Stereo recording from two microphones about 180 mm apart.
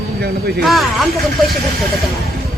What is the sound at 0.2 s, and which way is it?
Speech, 60° right (ahead or behind).